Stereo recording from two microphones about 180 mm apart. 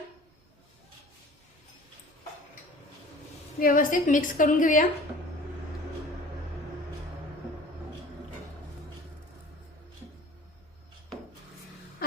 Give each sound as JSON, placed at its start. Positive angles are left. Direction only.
{"t": 3.6, "sound": "a woman's voice", "side_deg": 50}